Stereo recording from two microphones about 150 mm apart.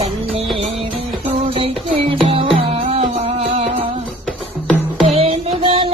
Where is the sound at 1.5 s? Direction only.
35° right (ahead or behind).